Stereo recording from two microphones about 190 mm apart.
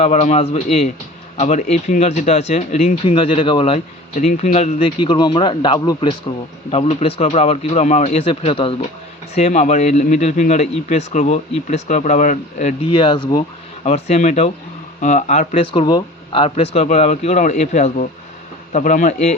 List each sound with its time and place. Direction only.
0.0 s speech: 40° left (ahead or behind)
13.8 s speech: 35° left (ahead or behind)